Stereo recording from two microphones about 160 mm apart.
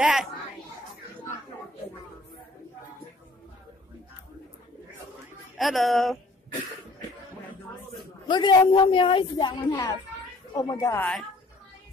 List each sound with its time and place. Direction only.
0.0 s speech: 5° right (ahead or behind)
5.6 s speech: centre (ahead or behind)
7.9 s a woman's voice: 30° left (ahead or behind)